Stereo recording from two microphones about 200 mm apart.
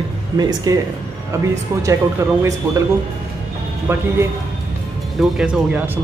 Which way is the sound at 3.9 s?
10° right (ahead or behind).